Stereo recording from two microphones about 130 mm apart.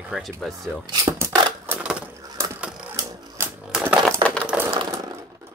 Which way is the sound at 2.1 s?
25° right (ahead or behind).